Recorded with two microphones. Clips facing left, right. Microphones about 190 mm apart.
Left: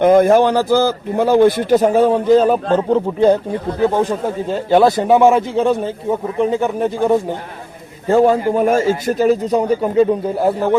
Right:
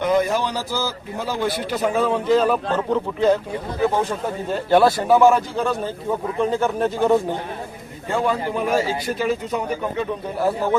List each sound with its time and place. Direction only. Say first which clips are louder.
0.0 s a man's voice: left 9 dB; 55° left (ahead or behind); by 3.3 s 30° left (ahead or behind)
4.7 s a man's voice: left 4 dB; 20° left (ahead or behind)
8.0 s a man's voice: left 9 dB; 40° left (ahead or behind)